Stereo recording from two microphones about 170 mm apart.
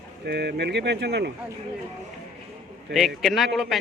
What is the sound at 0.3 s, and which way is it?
Speech, 75° right (ahead or behind).